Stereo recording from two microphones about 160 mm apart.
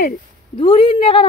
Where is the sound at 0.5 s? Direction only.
30° left (ahead or behind).